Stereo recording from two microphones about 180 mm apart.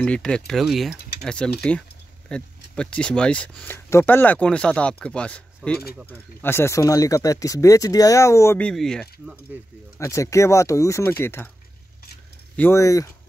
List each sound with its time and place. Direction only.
0.0 s speech: 5° left (ahead or behind)
9.9 s speech: 15° left (ahead or behind)
12.5 s speech: 15° left (ahead or behind)